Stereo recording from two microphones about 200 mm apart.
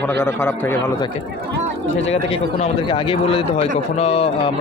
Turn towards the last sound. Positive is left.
turn(degrees=30)  # may be behind; listen again after turning